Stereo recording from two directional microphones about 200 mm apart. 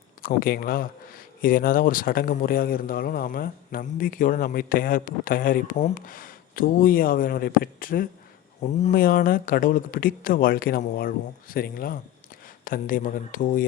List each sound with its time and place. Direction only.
0.2 s speech: 45° left (ahead or behind)